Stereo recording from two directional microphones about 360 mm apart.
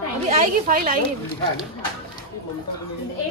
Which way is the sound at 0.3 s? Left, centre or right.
Right.